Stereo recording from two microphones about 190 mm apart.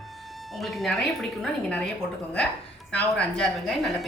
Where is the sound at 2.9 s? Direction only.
5° left (ahead or behind).